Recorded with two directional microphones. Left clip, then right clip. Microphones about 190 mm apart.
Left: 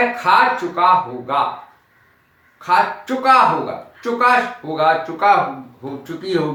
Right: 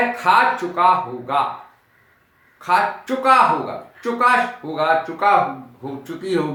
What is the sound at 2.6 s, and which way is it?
A man's voice, 15° right (ahead or behind).